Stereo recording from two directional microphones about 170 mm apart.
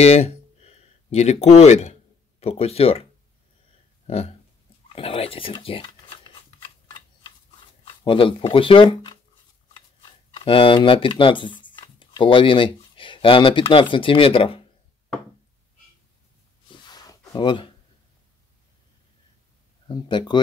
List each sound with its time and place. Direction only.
0.0 s a sound: 40° left (ahead or behind)
2.4 s speech: 35° left (ahead or behind)
4.9 s speech: 35° left (ahead or behind)
7.8 s speech: 30° left (ahead or behind)
10.3 s speech: 30° left (ahead or behind)
16.6 s a sound: 25° left (ahead or behind)
17.3 s speech: 30° left (ahead or behind)
19.9 s speech: 25° left (ahead or behind)